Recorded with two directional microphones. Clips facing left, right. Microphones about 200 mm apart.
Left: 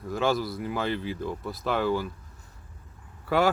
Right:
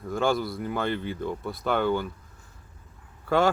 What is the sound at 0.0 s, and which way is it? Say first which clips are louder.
Speech: right 1 dB; centre (ahead or behind).